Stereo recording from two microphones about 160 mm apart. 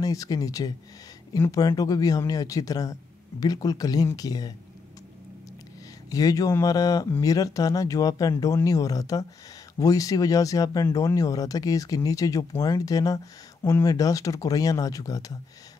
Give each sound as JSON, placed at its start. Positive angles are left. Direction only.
{"t": 0.0, "sound": "speech", "side_deg": 20}
{"t": 6.0, "sound": "speech", "side_deg": 20}